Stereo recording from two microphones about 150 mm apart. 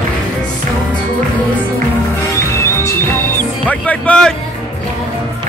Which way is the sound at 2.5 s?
20° left (ahead or behind).